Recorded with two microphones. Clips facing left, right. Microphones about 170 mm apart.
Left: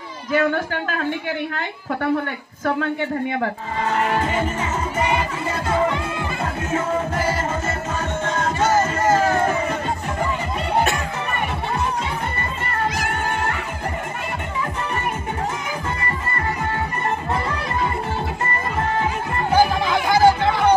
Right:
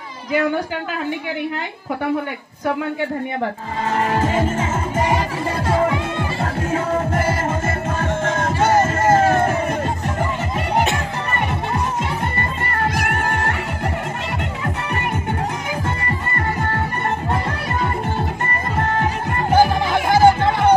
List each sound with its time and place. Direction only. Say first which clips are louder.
4.2 s music: right 3 dB; 30° right (ahead or behind)
7.2 s music: right 2 dB; 55° right (ahead or behind)
12.9 s music: right 2 dB; 60° right (ahead or behind)
18.4 s music: right 1 dB; 65° right (ahead or behind)
19.5 s music: right 2 dB; 50° right (ahead or behind)